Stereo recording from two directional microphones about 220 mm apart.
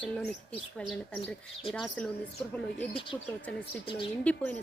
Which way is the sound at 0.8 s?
5° left (ahead or behind).